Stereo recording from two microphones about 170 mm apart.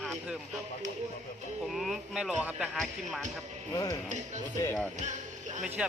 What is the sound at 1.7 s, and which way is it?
Speech, centre (ahead or behind).